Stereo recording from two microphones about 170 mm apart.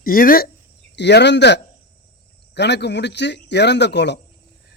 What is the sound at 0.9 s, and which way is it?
Speech, 90° left.